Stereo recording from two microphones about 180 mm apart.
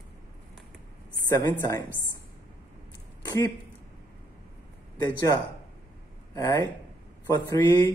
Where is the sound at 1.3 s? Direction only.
15° left (ahead or behind).